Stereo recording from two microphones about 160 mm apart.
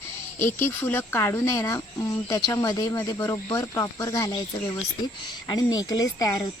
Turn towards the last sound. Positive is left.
turn(degrees=25)  # may be behind; listen again after turning